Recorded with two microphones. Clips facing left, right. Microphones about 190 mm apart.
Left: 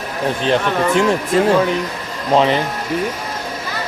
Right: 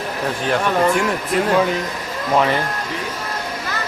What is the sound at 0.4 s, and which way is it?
Speech, 25° left (ahead or behind).